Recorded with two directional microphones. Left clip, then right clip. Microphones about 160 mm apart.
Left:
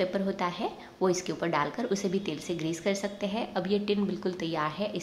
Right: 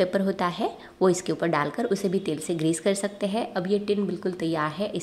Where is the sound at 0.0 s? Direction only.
35° right (ahead or behind).